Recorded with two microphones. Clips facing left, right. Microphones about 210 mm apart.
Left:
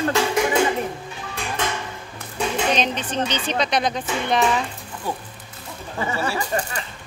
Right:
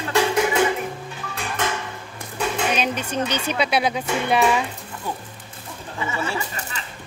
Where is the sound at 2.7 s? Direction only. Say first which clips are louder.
Even; 10° right (ahead or behind).